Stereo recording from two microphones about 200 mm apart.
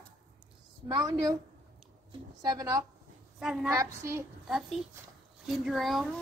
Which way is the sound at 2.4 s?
20° right (ahead or behind).